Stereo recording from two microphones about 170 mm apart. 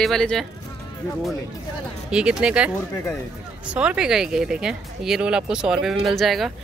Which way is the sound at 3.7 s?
5° right (ahead or behind).